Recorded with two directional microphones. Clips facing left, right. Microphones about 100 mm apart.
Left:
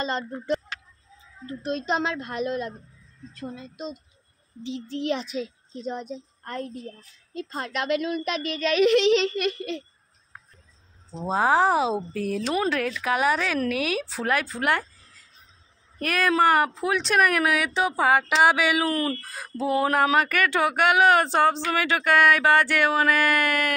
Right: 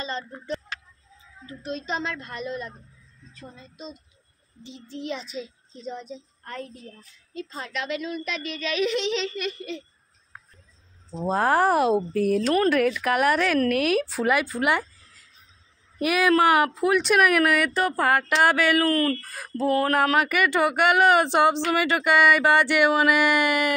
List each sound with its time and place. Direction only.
0.0 s speech: 60° left (ahead or behind)
1.6 s a woman's voice: 60° left (ahead or behind); by 2.7 s 80° left
3.3 s a woman's voice: 70° left (ahead or behind)
4.6 s speech: 80° left; by 9.8 s 65° left (ahead or behind)
11.2 s speech: centre (ahead or behind)
16.0 s a sound: 10° right (ahead or behind)
16.8 s speech: 5° right (ahead or behind)
18.9 s speech: 20° left (ahead or behind)
19.2 s speech: centre (ahead or behind)
21.2 s a sound: 15° right (ahead or behind)
21.6 s a sound: 5° right (ahead or behind)